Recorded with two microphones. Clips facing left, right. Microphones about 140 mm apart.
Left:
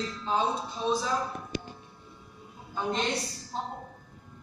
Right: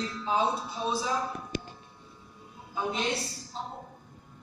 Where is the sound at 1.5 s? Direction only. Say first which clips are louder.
Left 1 dB; 20° left (ahead or behind).